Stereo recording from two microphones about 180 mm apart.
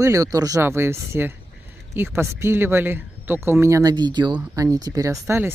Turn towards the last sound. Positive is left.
turn(degrees=-15)  # may be behind; listen again after turning